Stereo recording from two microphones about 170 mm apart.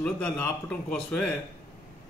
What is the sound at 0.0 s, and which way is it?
A man's voice, 5° left (ahead or behind).